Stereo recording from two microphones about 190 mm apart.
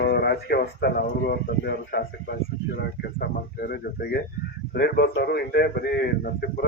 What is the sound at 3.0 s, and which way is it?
A man's voice, 55° left (ahead or behind).